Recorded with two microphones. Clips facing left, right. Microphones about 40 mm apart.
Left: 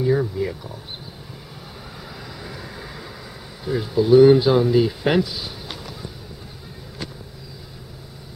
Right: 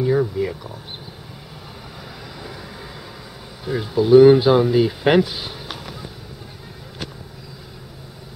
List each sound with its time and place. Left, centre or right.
0.0 s speech: centre
2.4 s vehicle: centre
3.6 s speech: centre
5.2 s speech: right